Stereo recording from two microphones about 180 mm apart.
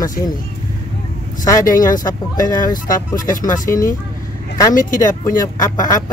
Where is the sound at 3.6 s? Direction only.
20° left (ahead or behind).